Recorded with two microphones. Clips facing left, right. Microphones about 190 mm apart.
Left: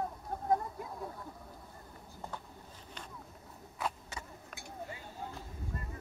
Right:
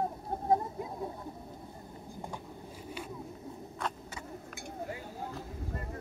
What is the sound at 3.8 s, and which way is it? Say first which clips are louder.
Vehicle: even; 5° left (ahead or behind).